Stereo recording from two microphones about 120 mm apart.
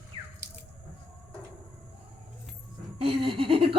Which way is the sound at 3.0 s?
50° right (ahead or behind).